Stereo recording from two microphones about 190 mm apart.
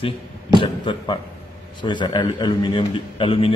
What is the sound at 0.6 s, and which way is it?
A man's voice, 25° left (ahead or behind).